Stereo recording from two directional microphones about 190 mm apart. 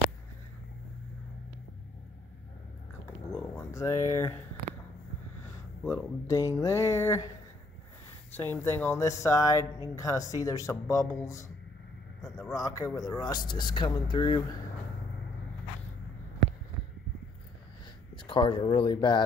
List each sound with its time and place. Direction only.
3.3 s a sound: 10° left (ahead or behind)
5.9 s speech: 15° left (ahead or behind)
8.4 s speech: 10° left (ahead or behind)
18.1 s speech: 25° left (ahead or behind)